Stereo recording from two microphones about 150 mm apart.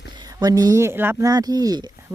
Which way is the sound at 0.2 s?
25° right (ahead or behind).